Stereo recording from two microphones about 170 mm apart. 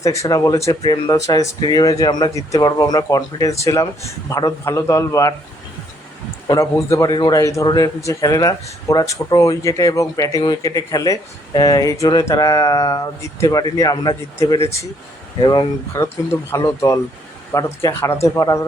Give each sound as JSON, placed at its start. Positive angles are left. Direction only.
{"t": 0.0, "sound": "a man's voice", "side_deg": 20}
{"t": 6.5, "sound": "a man's voice", "side_deg": 20}
{"t": 15.9, "sound": "a man's voice", "side_deg": 15}